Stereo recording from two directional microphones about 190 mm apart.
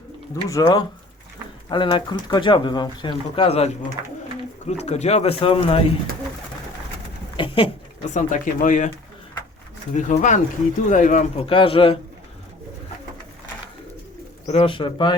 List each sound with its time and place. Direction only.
0.4 s speech: 20° left (ahead or behind)
7.3 s a sound: 30° left (ahead or behind)
8.1 s speech: 40° left (ahead or behind)
9.9 s speech: 40° left (ahead or behind)
14.4 s speech: 35° left (ahead or behind)